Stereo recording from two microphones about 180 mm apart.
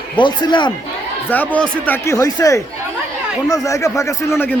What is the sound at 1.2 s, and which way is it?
Speech, 10° left (ahead or behind).